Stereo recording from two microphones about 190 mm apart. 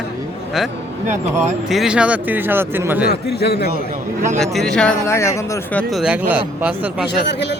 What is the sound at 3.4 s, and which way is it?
Speech, 60° left (ahead or behind).